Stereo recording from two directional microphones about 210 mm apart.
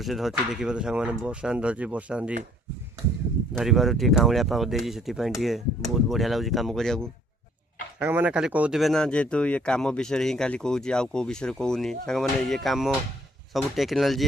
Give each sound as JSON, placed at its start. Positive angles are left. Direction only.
{"t": 0.0, "sound": "speech", "side_deg": 0}
{"t": 3.6, "sound": "speech", "side_deg": 0}
{"t": 7.9, "sound": "speech", "side_deg": -10}